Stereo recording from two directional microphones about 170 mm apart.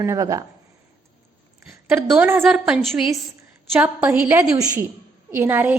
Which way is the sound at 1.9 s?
10° right (ahead or behind).